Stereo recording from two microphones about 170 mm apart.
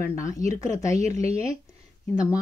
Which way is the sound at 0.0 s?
20° left (ahead or behind).